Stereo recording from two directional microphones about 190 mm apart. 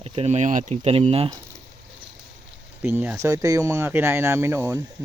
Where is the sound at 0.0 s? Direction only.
30° right (ahead or behind).